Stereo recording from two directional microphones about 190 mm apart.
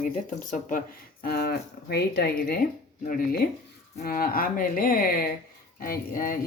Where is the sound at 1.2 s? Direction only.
55° left (ahead or behind).